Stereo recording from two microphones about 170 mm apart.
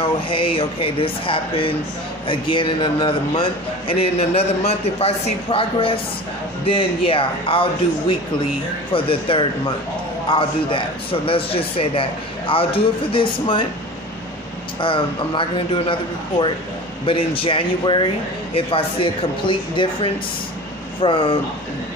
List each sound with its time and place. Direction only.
0.3 s a man's voice: 30° left (ahead or behind)
8.9 s a man's voice: 30° left (ahead or behind)
14.8 s a man's voice: 30° left (ahead or behind)